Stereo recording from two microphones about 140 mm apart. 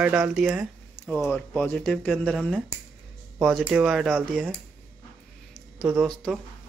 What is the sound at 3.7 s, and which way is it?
Speech, 5° right (ahead or behind).